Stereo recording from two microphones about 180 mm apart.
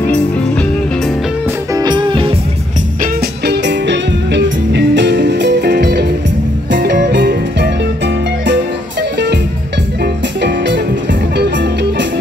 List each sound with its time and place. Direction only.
0.0 s music: 5° left (ahead or behind)
1.7 s music: 20° right (ahead or behind)
3.0 s music: 65° right (ahead or behind)
10.4 s music: 75° right (ahead or behind)